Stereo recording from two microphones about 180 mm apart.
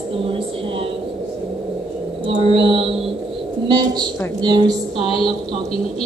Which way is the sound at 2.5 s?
30° right (ahead or behind).